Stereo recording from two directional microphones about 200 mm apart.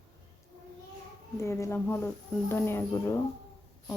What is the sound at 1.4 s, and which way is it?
Speech, 15° left (ahead or behind).